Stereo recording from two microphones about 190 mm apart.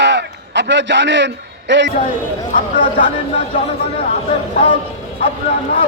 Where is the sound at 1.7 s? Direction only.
70° right (ahead or behind).